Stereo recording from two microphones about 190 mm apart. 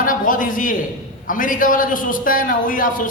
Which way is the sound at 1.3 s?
45° left (ahead or behind).